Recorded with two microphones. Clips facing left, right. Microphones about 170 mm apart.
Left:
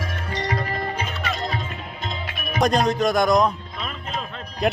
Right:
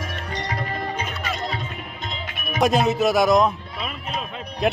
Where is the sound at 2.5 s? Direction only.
5° right (ahead or behind).